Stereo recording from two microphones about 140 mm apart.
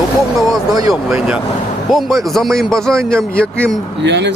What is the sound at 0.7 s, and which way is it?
Speech, 25° right (ahead or behind).